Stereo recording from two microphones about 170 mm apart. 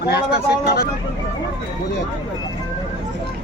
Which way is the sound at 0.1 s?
70° left (ahead or behind).